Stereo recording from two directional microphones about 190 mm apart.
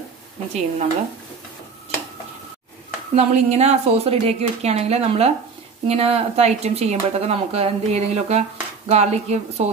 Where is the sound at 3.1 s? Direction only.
35° right (ahead or behind).